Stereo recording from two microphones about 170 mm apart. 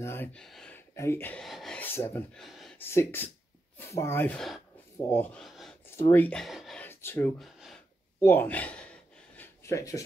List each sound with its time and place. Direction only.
0.0 s speech: 15° left (ahead or behind)
0.9 s speech: 15° left (ahead or behind)
1.8 s speech: 15° left (ahead or behind)
2.3 s speech: centre (ahead or behind)
2.8 s speech: 15° left (ahead or behind)
5.4 s a sound: centre (ahead or behind)
5.9 s speech: 15° left (ahead or behind)
6.9 s speech: 15° left (ahead or behind)
7.3 s a sound: centre (ahead or behind)
8.2 s speech: 10° left (ahead or behind)
9.4 s a sound: 15° left (ahead or behind)